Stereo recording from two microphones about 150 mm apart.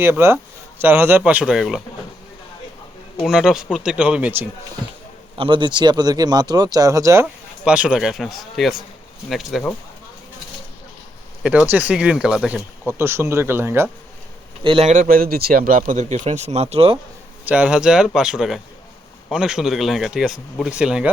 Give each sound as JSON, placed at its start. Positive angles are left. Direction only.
{"t": 0.0, "sound": "speech", "side_deg": -15}
{"t": 3.2, "sound": "speech", "side_deg": -5}
{"t": 5.4, "sound": "speech", "side_deg": -35}
{"t": 7.6, "sound": "speech", "side_deg": -10}
{"t": 11.4, "sound": "speech", "side_deg": -10}
{"t": 12.9, "sound": "speech", "side_deg": -15}
{"t": 14.6, "sound": "a man's voice", "side_deg": -35}
{"t": 14.8, "sound": "speech", "side_deg": -65}
{"t": 17.4, "sound": "speech", "side_deg": -10}